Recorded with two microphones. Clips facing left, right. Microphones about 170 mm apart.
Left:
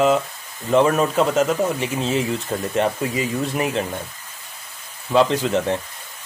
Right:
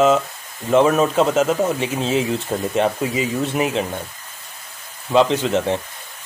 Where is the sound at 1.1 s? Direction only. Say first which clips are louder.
Right 1 dB; 20° right (ahead or behind).